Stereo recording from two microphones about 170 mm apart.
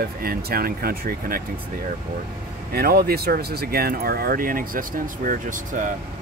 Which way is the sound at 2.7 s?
65° right (ahead or behind).